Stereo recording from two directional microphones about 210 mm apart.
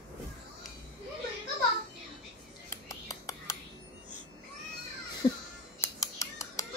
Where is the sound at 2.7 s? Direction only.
15° left (ahead or behind).